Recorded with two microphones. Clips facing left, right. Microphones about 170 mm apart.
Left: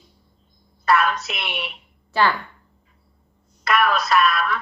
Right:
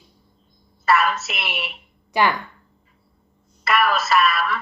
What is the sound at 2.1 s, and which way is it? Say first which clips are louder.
Speech: even; 15° right (ahead or behind).